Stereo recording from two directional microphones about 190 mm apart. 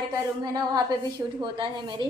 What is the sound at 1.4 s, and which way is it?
Speech, 25° right (ahead or behind).